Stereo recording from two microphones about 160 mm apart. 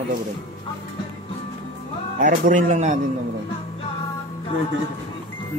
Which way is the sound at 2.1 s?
55° right (ahead or behind).